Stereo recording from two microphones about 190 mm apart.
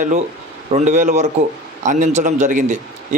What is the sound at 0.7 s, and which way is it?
A man's voice, 40° right (ahead or behind).